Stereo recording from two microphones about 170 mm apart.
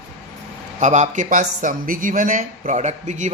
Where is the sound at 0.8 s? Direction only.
45° right (ahead or behind).